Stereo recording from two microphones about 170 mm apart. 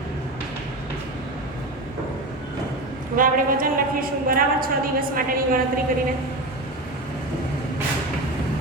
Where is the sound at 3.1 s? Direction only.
55° right (ahead or behind).